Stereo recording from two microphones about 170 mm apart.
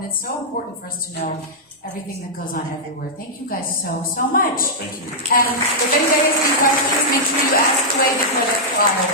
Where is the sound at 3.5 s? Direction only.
55° left (ahead or behind).